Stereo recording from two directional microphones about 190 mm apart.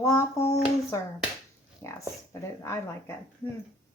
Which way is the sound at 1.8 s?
15° left (ahead or behind).